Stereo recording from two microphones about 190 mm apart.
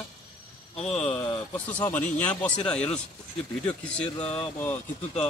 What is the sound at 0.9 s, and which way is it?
Speech, 30° left (ahead or behind).